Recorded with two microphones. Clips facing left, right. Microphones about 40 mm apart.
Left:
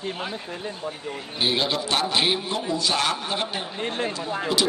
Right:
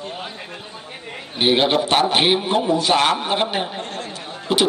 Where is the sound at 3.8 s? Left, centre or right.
Left.